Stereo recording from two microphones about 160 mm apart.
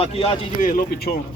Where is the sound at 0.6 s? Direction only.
60° left (ahead or behind).